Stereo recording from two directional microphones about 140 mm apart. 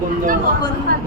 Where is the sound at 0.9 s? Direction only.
90° right.